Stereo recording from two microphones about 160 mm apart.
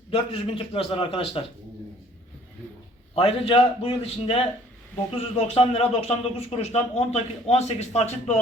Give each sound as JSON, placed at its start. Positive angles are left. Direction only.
{"t": 0.1, "sound": "a man's voice", "side_deg": 35}
{"t": 3.2, "sound": "a man's voice", "side_deg": 35}